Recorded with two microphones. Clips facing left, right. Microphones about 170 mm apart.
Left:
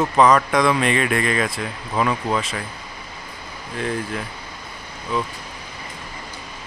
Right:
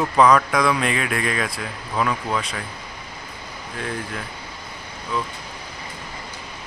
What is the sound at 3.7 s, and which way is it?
Speech, centre (ahead or behind).